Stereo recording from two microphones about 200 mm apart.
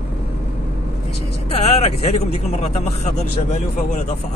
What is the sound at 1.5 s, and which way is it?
A man's voice, 30° left (ahead or behind).